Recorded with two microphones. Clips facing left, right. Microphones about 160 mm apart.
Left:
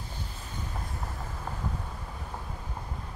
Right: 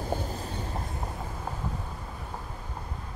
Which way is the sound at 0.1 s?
40° right (ahead or behind).